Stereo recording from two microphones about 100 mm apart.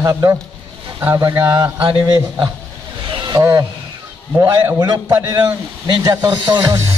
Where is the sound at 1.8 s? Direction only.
50° right (ahead or behind).